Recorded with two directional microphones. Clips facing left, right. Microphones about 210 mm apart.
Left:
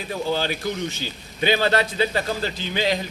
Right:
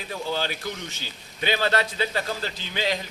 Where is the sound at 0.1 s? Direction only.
20° left (ahead or behind).